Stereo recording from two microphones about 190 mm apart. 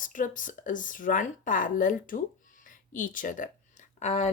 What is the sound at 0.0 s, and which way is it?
Speech, 45° left (ahead or behind).